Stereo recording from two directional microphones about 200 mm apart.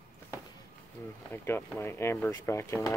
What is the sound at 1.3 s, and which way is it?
Speech, 10° left (ahead or behind).